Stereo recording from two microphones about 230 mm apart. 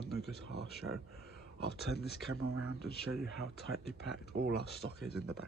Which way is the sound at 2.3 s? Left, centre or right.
Right.